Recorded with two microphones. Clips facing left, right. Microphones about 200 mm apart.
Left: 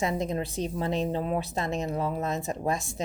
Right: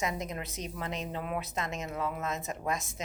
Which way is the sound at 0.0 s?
30° left (ahead or behind).